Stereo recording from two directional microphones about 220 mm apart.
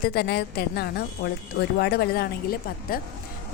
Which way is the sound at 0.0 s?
45° left (ahead or behind).